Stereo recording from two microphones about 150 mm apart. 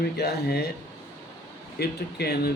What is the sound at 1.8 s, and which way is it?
Speech, 90° left.